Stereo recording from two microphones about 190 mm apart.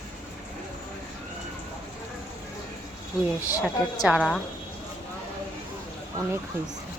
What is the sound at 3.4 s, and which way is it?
Speech, 15° left (ahead or behind).